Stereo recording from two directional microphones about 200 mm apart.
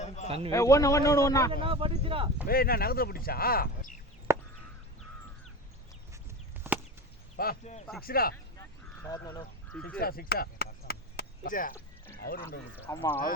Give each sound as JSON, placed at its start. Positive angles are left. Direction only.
{"t": 0.3, "sound": "a man's voice", "side_deg": -30}
{"t": 0.5, "sound": "a man's voice", "side_deg": 15}
{"t": 1.6, "sound": "speech", "side_deg": -25}
{"t": 2.5, "sound": "speech", "side_deg": 50}
{"t": 4.3, "sound": "chop", "side_deg": -15}
{"t": 6.7, "sound": "chop", "side_deg": -10}
{"t": 7.4, "sound": "speech", "side_deg": 50}
{"t": 9.0, "sound": "goose", "side_deg": 20}
{"t": 9.7, "sound": "a man's voice", "side_deg": 5}
{"t": 10.0, "sound": "chop", "side_deg": 50}
{"t": 12.8, "sound": "a man's voice", "side_deg": 10}